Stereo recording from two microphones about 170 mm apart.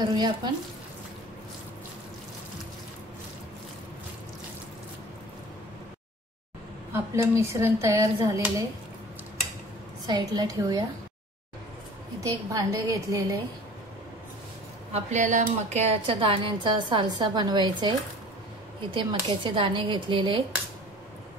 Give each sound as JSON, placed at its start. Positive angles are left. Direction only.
{"t": 0.0, "sound": "a woman's voice", "side_deg": -25}
{"t": 6.9, "sound": "speech", "side_deg": -15}
{"t": 10.0, "sound": "a woman's voice", "side_deg": -25}
{"t": 12.2, "sound": "a woman's voice", "side_deg": -20}
{"t": 14.9, "sound": "speech", "side_deg": -40}
{"t": 16.1, "sound": "a woman's voice", "side_deg": -30}
{"t": 18.9, "sound": "a woman's voice", "side_deg": -30}